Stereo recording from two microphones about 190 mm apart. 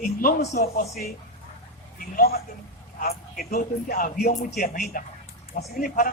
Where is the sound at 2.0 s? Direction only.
50° left (ahead or behind).